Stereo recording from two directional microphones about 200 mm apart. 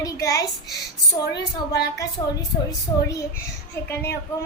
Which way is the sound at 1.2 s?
60° left (ahead or behind).